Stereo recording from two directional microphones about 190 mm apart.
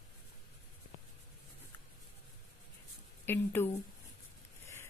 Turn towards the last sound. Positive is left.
turn(degrees=10)  # may be behind; listen again after turning